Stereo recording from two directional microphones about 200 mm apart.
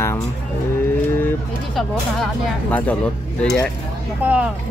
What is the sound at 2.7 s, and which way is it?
Speech, 5° left (ahead or behind).